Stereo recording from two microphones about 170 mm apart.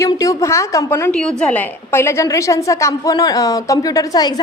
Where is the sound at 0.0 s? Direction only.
20° left (ahead or behind).